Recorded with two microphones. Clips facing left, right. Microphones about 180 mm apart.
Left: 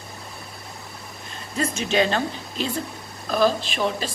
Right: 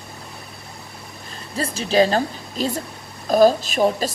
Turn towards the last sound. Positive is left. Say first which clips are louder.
# right 6 dB
turn(degrees=-40)  # may be behind; listen again after turning